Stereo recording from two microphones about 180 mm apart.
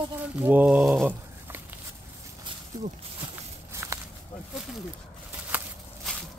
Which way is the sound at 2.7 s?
20° right (ahead or behind).